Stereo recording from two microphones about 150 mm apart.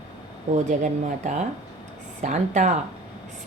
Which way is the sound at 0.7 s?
55° right (ahead or behind).